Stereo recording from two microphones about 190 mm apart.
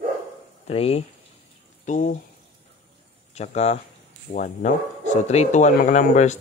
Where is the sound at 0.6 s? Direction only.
30° left (ahead or behind).